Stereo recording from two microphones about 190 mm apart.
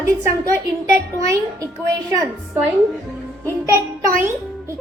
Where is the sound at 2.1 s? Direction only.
20° right (ahead or behind).